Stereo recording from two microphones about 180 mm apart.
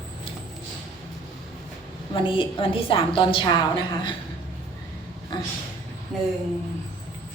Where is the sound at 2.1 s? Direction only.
30° left (ahead or behind).